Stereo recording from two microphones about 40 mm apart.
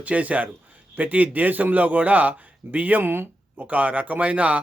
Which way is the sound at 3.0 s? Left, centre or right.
Right.